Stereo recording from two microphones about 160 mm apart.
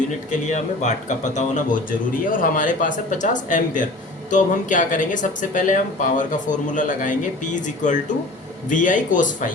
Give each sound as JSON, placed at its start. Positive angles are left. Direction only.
{"t": 0.3, "sound": "speech", "side_deg": 50}